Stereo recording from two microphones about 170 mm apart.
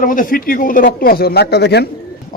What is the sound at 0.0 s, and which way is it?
A man's voice, 50° left (ahead or behind).